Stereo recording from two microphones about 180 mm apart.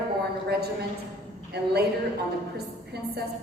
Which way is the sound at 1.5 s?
65° right (ahead or behind).